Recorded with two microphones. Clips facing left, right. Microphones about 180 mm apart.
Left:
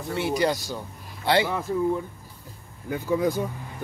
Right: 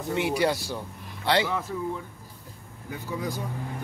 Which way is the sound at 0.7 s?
10° left (ahead or behind).